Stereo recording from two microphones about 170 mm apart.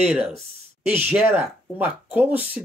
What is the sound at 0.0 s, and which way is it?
Speech, 5° right (ahead or behind).